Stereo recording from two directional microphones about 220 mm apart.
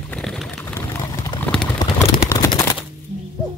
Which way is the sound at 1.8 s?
15° left (ahead or behind).